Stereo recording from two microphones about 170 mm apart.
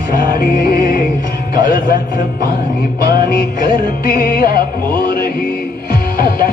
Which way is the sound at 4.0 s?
60° left (ahead or behind).